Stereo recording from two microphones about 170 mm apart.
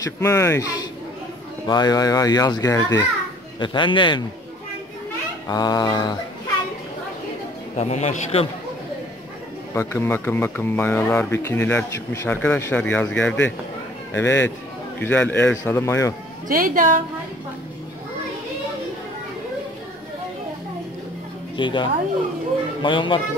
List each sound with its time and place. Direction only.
0.0 s a child's voice: 15° left (ahead or behind)
5.5 s a child's voice: 20° left (ahead or behind)
7.7 s a man's voice: 40° left (ahead or behind)
9.8 s speech: 15° left (ahead or behind)
16.4 s a woman's voice: 55° right (ahead or behind)
21.5 s a child's voice: 30° left (ahead or behind)